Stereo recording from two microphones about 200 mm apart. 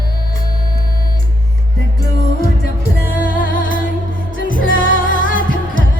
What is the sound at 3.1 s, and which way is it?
Music, 40° left (ahead or behind).